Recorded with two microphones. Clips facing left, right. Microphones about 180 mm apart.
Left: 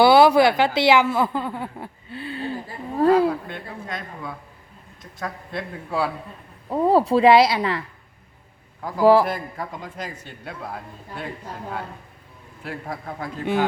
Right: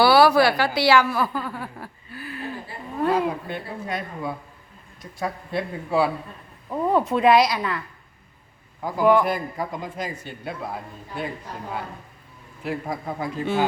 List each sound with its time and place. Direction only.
0.0 s a woman's voice: 20° left (ahead or behind)
2.6 s a sound: 35° left (ahead or behind)
3.5 s speech: 10° right (ahead or behind)
6.7 s a woman's voice: 30° left (ahead or behind)
9.0 s a man's voice: 30° left (ahead or behind)
9.7 s speech: 5° right (ahead or behind)
12.6 s speech: 5° right (ahead or behind)